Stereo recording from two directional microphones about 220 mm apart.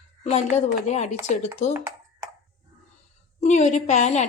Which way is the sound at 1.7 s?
10° right (ahead or behind).